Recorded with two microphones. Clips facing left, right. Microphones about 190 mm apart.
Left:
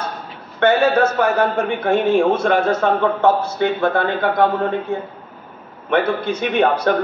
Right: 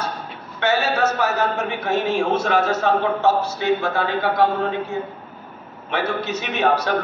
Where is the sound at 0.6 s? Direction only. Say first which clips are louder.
Left 6 dB; 55° left (ahead or behind).